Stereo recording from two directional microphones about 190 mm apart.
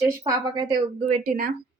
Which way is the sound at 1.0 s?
40° right (ahead or behind).